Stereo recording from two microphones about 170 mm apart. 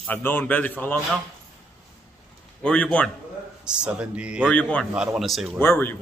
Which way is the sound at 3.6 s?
5° right (ahead or behind).